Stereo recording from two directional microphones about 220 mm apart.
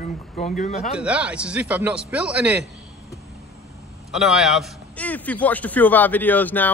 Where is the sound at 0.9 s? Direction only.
5° right (ahead or behind).